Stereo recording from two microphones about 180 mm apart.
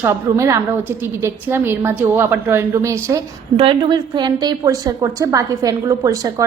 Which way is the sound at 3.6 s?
30° right (ahead or behind).